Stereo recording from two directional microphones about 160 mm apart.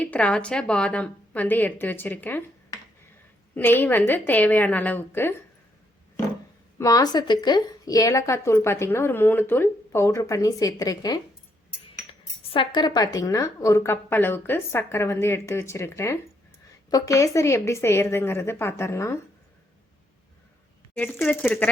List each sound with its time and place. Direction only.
0.0 s a woman's voice: 5° left (ahead or behind)
3.5 s a woman's voice: 10° left (ahead or behind)
6.7 s a woman's voice: 20° left (ahead or behind)
12.5 s a woman's voice: 30° left (ahead or behind)
20.9 s a woman's voice: 15° left (ahead or behind)